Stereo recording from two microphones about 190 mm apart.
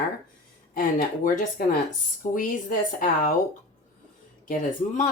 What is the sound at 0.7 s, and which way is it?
Speech, 45° left (ahead or behind).